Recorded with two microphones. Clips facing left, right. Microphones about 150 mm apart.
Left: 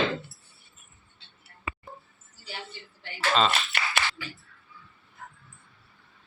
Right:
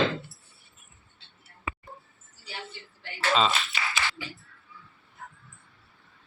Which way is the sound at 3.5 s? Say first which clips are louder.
Left 1 dB; 65° left (ahead or behind).